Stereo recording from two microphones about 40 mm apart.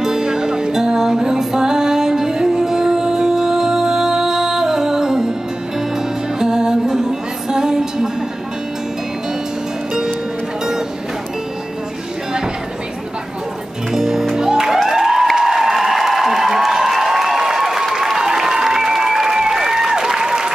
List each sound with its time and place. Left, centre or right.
0.0 s music: centre
6.4 s music: centre
13.9 s music: centre
15.3 s applause: centre